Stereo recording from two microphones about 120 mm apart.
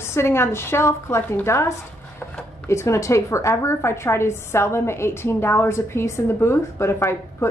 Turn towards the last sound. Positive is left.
turn(degrees=20)  # may be behind; listen again after turning